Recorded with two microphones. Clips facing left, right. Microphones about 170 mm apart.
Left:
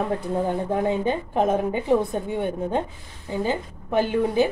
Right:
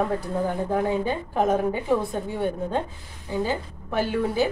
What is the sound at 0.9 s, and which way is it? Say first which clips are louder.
A woman's voice: left 2 dB; 20° left (ahead or behind).